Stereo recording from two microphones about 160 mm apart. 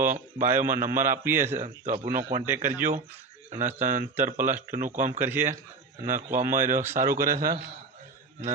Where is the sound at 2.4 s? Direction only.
15° right (ahead or behind).